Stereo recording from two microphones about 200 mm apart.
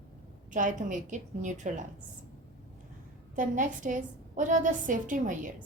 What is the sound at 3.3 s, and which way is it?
A woman's voice, 40° right (ahead or behind).